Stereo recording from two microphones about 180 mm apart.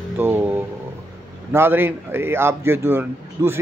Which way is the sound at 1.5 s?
10° right (ahead or behind).